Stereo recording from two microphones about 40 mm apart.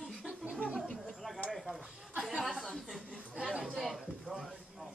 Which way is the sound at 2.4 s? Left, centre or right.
Centre.